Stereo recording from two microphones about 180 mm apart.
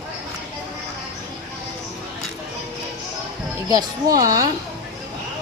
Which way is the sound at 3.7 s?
20° right (ahead or behind).